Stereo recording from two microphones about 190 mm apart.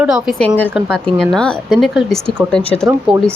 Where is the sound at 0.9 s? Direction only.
5° left (ahead or behind).